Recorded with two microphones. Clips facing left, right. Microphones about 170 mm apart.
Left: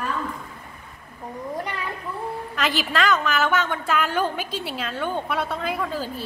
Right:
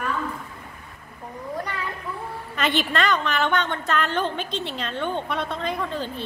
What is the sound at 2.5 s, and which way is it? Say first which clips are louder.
A woman's voice: right 2 dB; centre (ahead or behind).